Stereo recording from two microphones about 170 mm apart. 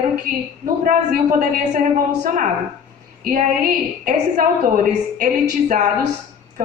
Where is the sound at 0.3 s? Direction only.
55° right (ahead or behind).